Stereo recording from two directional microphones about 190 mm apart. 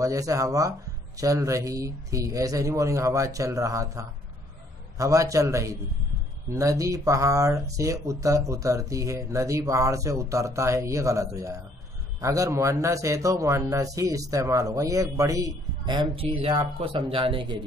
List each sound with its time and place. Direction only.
0.0 s a man's voice: 15° right (ahead or behind)